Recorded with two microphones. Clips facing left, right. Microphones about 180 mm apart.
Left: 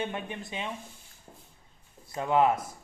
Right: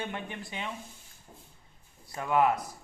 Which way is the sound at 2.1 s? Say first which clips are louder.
Left 2 dB; 25° left (ahead or behind).